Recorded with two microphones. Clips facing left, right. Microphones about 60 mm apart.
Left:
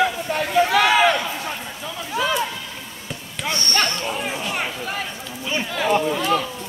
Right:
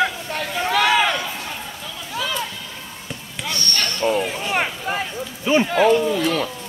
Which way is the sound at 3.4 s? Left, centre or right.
Left.